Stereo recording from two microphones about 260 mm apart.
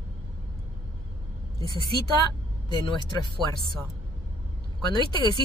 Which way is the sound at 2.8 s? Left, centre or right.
Centre.